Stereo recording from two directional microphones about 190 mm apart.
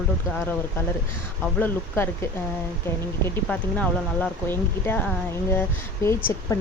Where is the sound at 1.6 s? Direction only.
10° left (ahead or behind).